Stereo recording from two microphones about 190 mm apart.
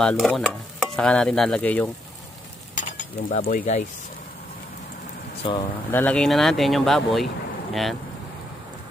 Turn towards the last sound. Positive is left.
turn(degrees=0)  # may be behind; listen again after turning